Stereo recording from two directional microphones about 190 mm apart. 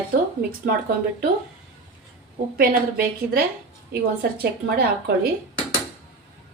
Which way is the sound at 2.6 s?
50° right (ahead or behind).